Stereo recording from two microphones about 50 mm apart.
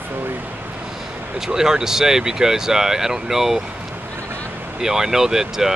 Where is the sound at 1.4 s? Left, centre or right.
Centre.